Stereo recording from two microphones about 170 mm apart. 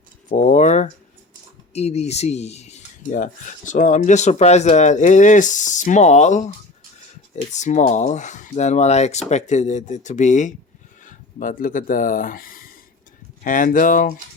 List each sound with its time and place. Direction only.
0.3 s a sound: 45° left (ahead or behind)
1.7 s speech: 40° left (ahead or behind)
7.5 s speech: 45° left (ahead or behind)